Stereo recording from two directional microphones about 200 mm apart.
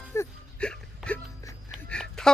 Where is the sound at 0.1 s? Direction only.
10° left (ahead or behind).